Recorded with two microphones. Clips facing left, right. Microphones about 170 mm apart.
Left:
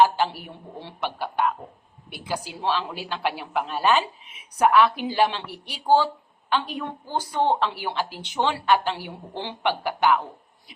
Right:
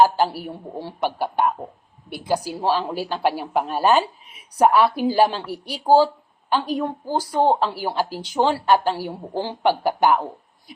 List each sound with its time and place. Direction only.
0.0 s a woman's voice: 40° right (ahead or behind)